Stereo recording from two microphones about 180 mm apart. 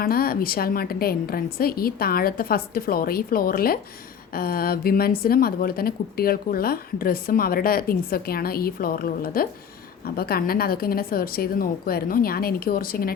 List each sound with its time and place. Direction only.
0.0 s a woman's voice: 55° left (ahead or behind)